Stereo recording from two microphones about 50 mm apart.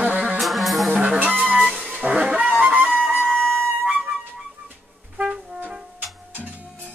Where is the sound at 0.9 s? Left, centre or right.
Centre.